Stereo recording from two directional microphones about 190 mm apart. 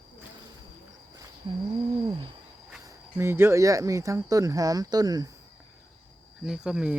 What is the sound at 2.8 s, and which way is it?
Speech, 15° right (ahead or behind).